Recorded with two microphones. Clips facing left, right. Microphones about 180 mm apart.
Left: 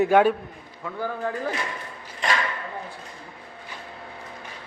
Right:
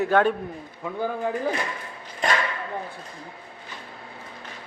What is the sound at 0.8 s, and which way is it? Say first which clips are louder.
Speech: right 2 dB; 15° right (ahead or behind).